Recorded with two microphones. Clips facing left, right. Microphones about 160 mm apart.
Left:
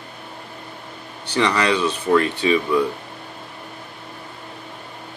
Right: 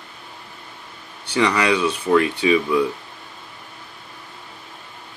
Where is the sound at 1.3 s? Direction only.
10° right (ahead or behind).